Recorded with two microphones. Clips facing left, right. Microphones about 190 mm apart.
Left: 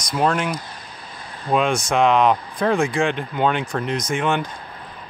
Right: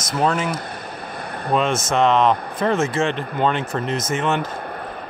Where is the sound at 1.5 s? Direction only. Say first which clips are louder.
Left 1 dB; centre (ahead or behind).